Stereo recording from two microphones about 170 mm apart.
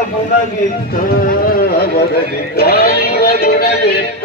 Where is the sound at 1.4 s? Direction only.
60° left (ahead or behind).